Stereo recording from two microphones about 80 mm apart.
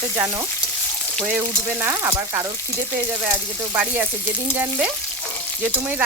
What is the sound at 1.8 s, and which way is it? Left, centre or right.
Frying, right.